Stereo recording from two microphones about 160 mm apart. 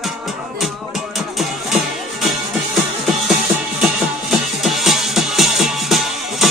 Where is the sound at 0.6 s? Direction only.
Centre (ahead or behind).